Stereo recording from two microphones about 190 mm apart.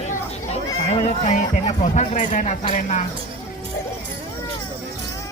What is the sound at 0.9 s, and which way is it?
Speech, 35° left (ahead or behind).